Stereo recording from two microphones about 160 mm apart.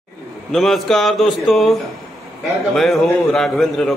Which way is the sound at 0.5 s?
Centre (ahead or behind).